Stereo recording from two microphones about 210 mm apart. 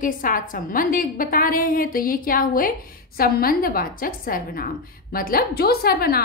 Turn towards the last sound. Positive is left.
turn(degrees=45)  # may be behind; listen again after turning